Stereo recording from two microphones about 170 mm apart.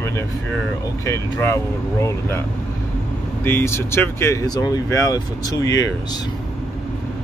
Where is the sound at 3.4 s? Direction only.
15° left (ahead or behind).